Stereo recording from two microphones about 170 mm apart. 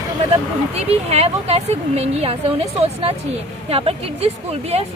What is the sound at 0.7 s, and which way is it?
A woman's voice, 35° right (ahead or behind).